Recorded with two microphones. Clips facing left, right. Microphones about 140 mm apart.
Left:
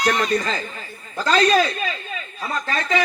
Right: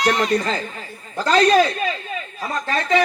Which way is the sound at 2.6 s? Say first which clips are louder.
Right 4 dB; 40° right (ahead or behind).